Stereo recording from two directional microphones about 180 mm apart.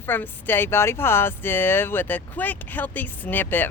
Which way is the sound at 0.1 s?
10° left (ahead or behind).